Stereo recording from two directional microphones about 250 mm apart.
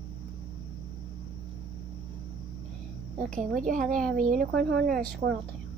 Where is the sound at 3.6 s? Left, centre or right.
Right.